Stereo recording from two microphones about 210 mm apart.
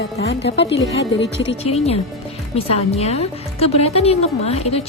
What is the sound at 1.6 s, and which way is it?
A woman's voice, 30° left (ahead or behind).